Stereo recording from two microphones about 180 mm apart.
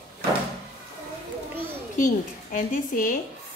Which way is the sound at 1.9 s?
45° left (ahead or behind).